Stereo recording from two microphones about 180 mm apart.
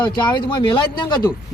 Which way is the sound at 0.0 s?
25° left (ahead or behind).